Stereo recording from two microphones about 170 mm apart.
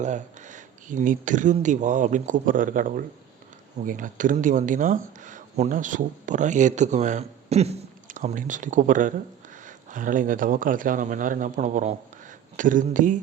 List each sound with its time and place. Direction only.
0.0 s speech: 45° right (ahead or behind)